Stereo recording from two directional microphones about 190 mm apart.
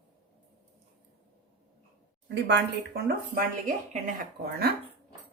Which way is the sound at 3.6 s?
40° right (ahead or behind).